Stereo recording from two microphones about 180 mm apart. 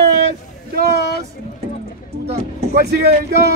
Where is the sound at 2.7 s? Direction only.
65° right (ahead or behind).